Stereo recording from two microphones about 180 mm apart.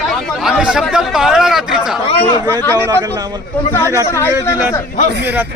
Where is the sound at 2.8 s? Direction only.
15° right (ahead or behind).